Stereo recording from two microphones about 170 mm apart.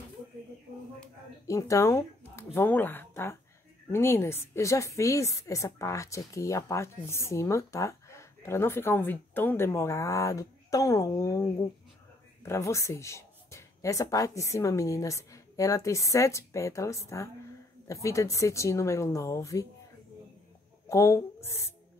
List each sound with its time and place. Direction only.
1.5 s a woman's voice: 15° left (ahead or behind)
20.9 s speech: 15° left (ahead or behind)